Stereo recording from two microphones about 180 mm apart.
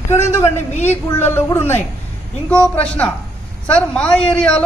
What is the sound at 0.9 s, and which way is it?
A woman's voice, 10° left (ahead or behind).